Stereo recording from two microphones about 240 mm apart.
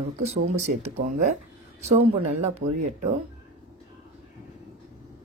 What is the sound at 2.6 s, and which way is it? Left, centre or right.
Speech, right.